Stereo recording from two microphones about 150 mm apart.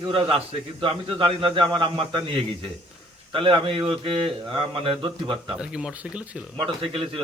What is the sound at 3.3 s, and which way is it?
Speech, 35° right (ahead or behind).